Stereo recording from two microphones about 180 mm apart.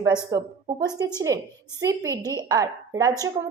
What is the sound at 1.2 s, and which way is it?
A woman's voice, 20° right (ahead or behind).